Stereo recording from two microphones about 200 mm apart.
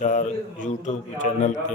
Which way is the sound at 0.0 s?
40° left (ahead or behind).